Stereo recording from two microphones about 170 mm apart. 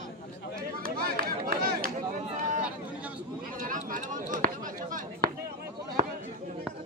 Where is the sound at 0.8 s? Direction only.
60° right (ahead or behind).